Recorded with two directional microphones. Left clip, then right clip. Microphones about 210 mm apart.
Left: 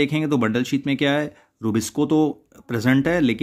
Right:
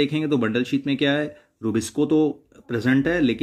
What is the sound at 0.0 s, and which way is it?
Speech, 30° left (ahead or behind).